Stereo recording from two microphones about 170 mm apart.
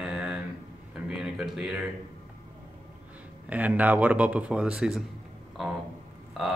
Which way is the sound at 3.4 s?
10° right (ahead or behind).